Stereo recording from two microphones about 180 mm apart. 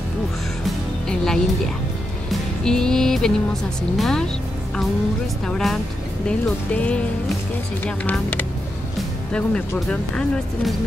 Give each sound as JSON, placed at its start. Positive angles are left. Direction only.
{"t": 0.7, "sound": "music", "side_deg": 5}
{"t": 2.3, "sound": "speech", "side_deg": 5}
{"t": 5.5, "sound": "speech", "side_deg": 0}